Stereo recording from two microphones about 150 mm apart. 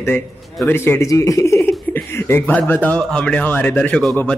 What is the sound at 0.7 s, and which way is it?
Speech, 15° left (ahead or behind).